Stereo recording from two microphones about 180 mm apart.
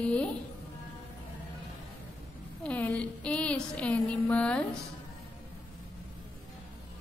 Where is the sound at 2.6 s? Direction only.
10° left (ahead or behind).